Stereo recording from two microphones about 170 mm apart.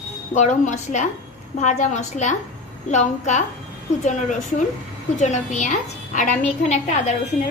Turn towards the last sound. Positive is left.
turn(degrees=45)  # may be behind; listen again after turning